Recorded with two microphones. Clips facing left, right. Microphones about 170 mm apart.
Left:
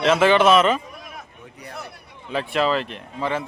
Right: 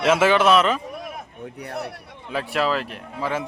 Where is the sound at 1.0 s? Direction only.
60° right (ahead or behind).